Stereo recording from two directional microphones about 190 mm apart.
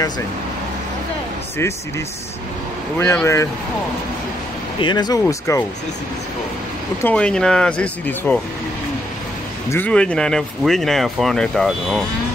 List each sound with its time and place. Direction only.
3.0 s speech: 10° left (ahead or behind)
4.7 s speech: 25° left (ahead or behind)
5.2 s speech: 10° left (ahead or behind)
7.0 s speech: 5° left (ahead or behind)
9.7 s speech: 10° left (ahead or behind)